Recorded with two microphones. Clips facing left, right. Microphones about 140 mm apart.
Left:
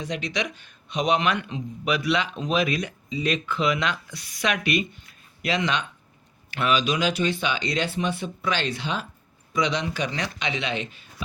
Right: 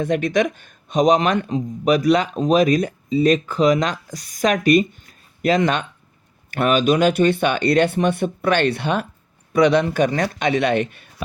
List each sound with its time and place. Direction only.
0.0 s speech: 55° right (ahead or behind)